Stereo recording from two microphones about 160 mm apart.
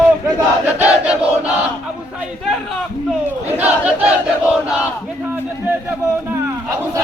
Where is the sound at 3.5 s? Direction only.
10° right (ahead or behind).